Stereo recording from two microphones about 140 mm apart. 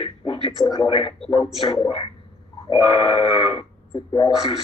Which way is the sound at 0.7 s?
40° left (ahead or behind).